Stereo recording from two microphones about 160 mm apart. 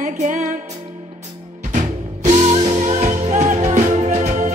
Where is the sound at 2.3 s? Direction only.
45° right (ahead or behind).